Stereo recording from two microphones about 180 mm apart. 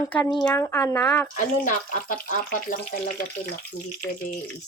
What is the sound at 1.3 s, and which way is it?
Speech, 45° left (ahead or behind).